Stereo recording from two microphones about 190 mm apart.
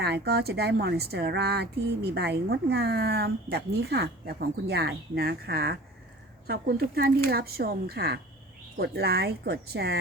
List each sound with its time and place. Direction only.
0.0 s a woman's voice: 60° right (ahead or behind)